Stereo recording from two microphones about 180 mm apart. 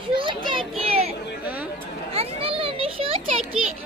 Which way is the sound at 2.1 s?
30° right (ahead or behind).